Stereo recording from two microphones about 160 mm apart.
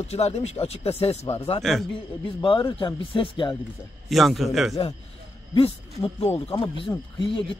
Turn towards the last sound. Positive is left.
turn(degrees=30)  # may be behind; listen again after turning